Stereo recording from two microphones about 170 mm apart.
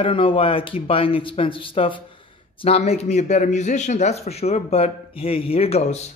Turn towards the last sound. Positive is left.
turn(degrees=35)  # may be behind; listen again after turning